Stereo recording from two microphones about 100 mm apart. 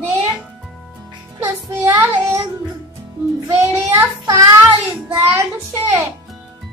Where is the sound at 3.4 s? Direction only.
30° right (ahead or behind).